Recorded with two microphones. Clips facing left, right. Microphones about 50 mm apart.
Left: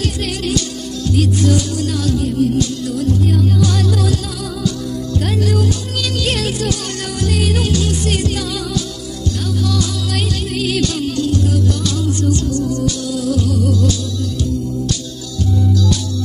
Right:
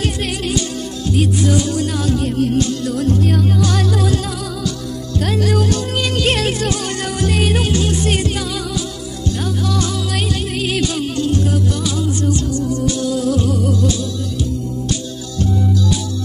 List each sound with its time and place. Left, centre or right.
0.0 s music: right
2.1 s music: right
5.4 s music: right
6.2 s music: right
10.6 s music: centre
11.8 s music: centre
15.7 s music: centre